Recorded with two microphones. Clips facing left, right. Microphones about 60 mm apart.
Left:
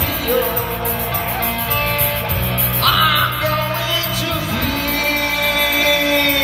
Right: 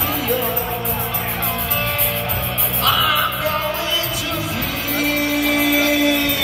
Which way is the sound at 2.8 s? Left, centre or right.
Left.